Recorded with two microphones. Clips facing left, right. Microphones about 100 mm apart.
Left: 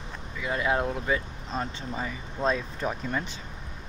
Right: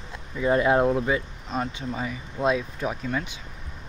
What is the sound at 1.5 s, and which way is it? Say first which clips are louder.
Speech: right 3 dB; 5° right (ahead or behind).